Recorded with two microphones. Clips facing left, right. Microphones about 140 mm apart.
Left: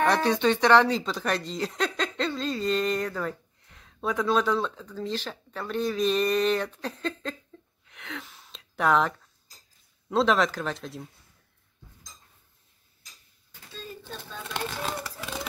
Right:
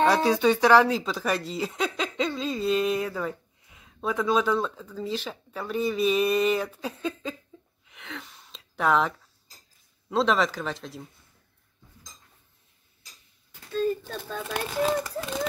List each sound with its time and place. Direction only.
0.1 s speech: 5° right (ahead or behind)
7.8 s gasp: centre (ahead or behind)
10.0 s speech: centre (ahead or behind)
13.7 s a sound: 45° right (ahead or behind)
14.7 s speech: 5° right (ahead or behind)